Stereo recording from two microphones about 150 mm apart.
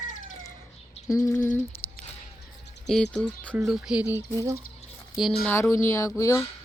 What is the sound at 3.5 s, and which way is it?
Speech, 5° right (ahead or behind).